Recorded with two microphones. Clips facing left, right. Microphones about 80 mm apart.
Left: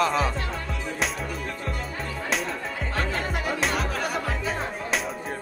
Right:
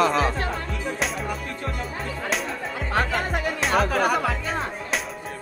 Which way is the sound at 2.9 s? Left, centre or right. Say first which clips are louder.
Right 5 dB; right.